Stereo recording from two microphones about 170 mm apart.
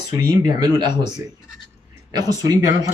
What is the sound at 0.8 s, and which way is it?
Speech, 25° right (ahead or behind).